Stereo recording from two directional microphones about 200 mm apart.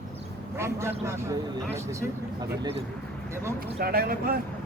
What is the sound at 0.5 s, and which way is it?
Speech, 15° right (ahead or behind).